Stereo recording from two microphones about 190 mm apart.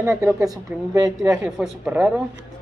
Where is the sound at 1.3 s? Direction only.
5° right (ahead or behind).